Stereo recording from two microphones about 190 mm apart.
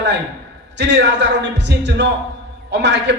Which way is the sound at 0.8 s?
65° right (ahead or behind).